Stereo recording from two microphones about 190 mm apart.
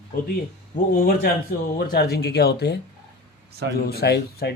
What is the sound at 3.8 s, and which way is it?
Speech, 55° left (ahead or behind).